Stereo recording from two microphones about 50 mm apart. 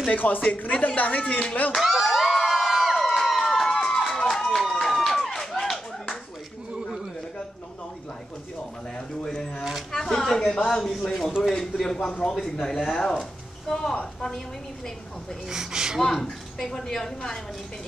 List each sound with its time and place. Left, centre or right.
0.1 s speech: left
1.8 s crowd: centre
8.9 s a sound: centre
10.7 s speech: centre
12.5 s speech: centre
15.5 s speech: centre
16.0 s speech: centre